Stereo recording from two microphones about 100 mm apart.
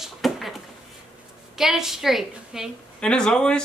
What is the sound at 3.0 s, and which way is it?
Speech, 10° left (ahead or behind).